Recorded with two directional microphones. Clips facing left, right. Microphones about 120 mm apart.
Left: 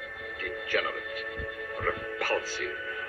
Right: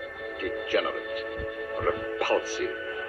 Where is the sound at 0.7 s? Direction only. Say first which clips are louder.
Right 3 dB; 25° right (ahead or behind).